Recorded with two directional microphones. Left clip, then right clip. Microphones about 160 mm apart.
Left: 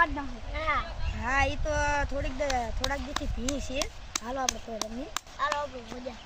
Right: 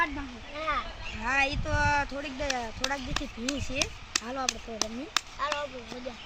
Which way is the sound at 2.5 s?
30° left (ahead or behind).